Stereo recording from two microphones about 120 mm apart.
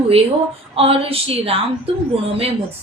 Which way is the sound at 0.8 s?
55° right (ahead or behind).